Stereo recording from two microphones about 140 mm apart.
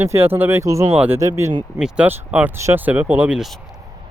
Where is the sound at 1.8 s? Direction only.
10° right (ahead or behind).